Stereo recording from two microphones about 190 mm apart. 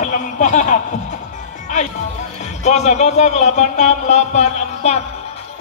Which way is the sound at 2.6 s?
35° left (ahead or behind).